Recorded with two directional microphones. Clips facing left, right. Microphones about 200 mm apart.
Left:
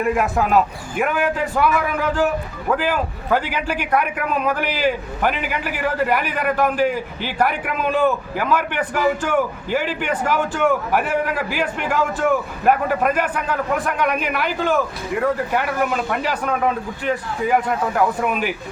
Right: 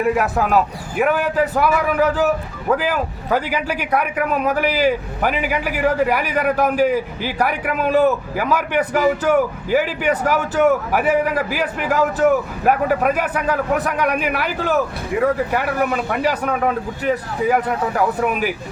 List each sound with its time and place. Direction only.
0.0 s a man's voice: 5° right (ahead or behind)